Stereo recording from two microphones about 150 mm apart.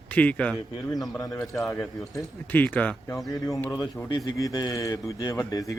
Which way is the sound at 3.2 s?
20° left (ahead or behind).